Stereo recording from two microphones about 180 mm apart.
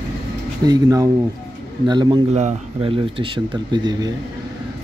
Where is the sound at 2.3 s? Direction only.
40° right (ahead or behind).